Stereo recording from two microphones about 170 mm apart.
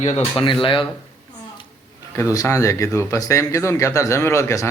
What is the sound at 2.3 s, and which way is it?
Speech, 20° left (ahead or behind).